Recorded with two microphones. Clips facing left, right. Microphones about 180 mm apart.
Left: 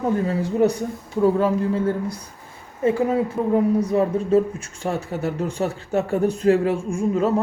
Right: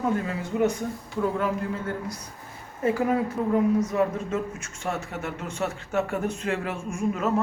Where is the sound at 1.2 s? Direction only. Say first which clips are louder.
Left 8 dB; 35° left (ahead or behind).